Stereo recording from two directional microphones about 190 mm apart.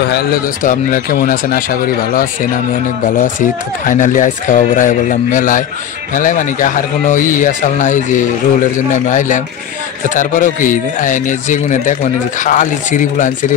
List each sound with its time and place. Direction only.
0.1 s a man's voice: 50° left (ahead or behind)